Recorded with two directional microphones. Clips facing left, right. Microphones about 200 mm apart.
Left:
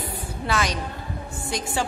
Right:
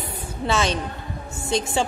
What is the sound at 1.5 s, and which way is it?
Speech, 25° right (ahead or behind).